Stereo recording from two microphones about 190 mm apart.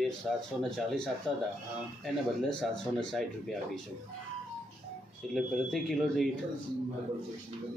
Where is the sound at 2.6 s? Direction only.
5° left (ahead or behind).